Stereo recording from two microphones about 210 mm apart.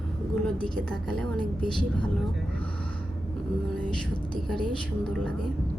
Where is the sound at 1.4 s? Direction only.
20° left (ahead or behind).